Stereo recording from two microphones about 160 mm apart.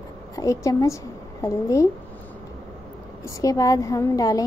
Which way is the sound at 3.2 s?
20° left (ahead or behind).